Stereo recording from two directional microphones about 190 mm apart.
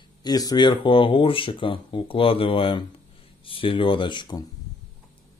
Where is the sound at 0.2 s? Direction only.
20° left (ahead or behind).